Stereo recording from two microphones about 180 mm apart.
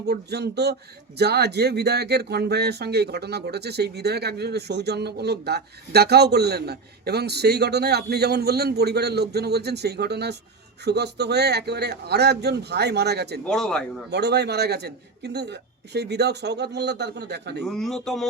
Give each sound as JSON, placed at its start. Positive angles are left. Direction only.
{"t": 0.1, "sound": "a man's voice", "side_deg": -65}
{"t": 13.4, "sound": "a man's voice", "side_deg": 5}
{"t": 14.1, "sound": "a man's voice", "side_deg": -70}
{"t": 17.6, "sound": "a man's voice", "side_deg": 0}